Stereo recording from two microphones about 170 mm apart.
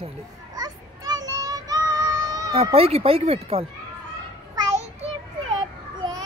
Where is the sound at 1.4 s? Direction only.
20° right (ahead or behind).